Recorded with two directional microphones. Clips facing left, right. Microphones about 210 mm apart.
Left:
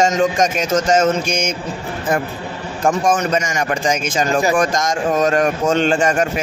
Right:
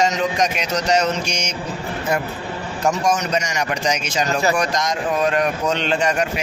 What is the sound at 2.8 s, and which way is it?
A man's voice, 50° left (ahead or behind).